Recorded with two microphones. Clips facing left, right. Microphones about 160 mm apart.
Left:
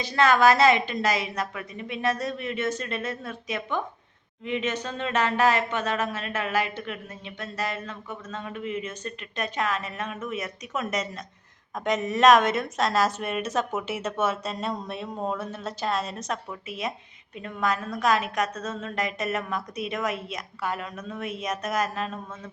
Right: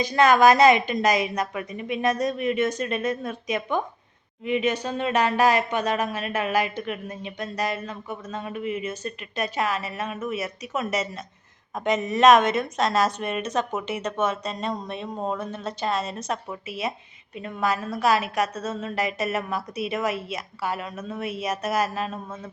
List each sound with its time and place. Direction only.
0.0 s a woman's voice: 15° right (ahead or behind)